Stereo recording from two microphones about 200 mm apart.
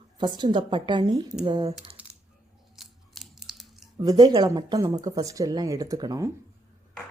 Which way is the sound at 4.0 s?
20° right (ahead or behind).